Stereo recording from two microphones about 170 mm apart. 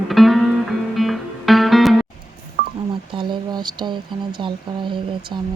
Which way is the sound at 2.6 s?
90° right.